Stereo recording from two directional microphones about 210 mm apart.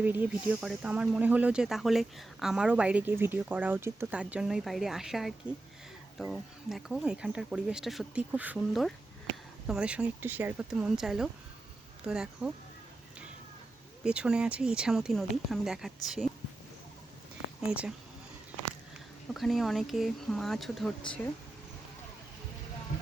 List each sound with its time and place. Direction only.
0.0 s speech: 10° right (ahead or behind)
14.0 s speech: 5° right (ahead or behind)
17.7 s speech: 5° right (ahead or behind)
19.3 s speech: centre (ahead or behind)